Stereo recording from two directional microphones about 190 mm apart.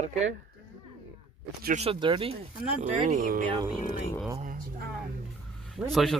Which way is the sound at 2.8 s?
40° right (ahead or behind).